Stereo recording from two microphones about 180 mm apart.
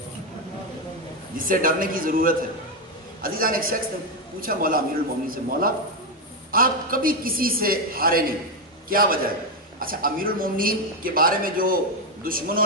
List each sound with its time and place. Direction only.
1.3 s a woman's voice: 50° right (ahead or behind)